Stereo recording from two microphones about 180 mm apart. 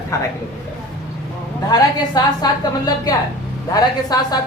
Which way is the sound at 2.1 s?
20° left (ahead or behind).